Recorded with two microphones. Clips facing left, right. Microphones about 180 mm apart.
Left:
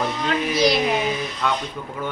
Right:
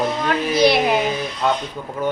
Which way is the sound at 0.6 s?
65° right (ahead or behind).